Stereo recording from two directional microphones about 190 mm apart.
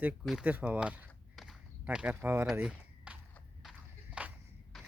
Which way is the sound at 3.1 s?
5° right (ahead or behind).